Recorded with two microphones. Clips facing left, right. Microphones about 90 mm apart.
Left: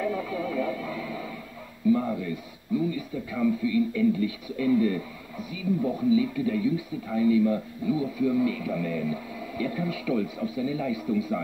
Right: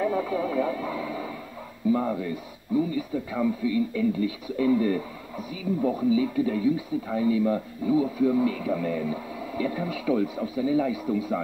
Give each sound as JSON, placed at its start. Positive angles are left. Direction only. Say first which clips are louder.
{"t": 0.0, "sound": "radio", "louder": "right 3 dB", "side_deg": -30}
{"t": 1.9, "sound": "a sound", "louder": "left 1 dB", "side_deg": -30}
{"t": 2.7, "sound": "speech", "louder": "right 2 dB", "side_deg": -30}